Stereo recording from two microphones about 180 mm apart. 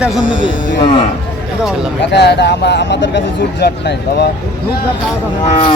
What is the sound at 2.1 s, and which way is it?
Speech, 70° left (ahead or behind).